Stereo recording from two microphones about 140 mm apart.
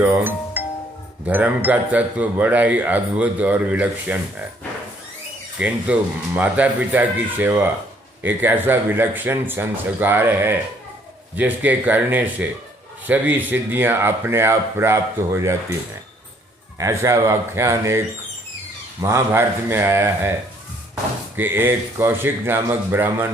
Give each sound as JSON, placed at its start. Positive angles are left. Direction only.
{"t": 0.0, "sound": "speech", "side_deg": -15}
{"t": 5.5, "sound": "speech", "side_deg": -10}
{"t": 16.7, "sound": "speech", "side_deg": -20}
{"t": 19.0, "sound": "speech", "side_deg": -15}
{"t": 21.3, "sound": "speech", "side_deg": -15}